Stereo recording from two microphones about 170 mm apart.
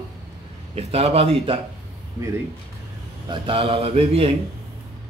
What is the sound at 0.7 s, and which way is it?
Speech, 35° right (ahead or behind).